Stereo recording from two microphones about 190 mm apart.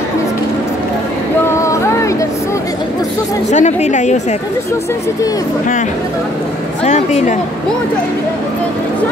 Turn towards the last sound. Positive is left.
turn(degrees=35)  # may be behind; listen again after turning